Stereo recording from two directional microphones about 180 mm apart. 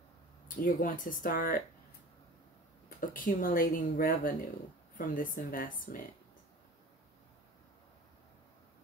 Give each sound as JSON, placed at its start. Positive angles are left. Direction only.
{"t": 0.6, "sound": "speech", "side_deg": 50}
{"t": 2.9, "sound": "speech", "side_deg": 50}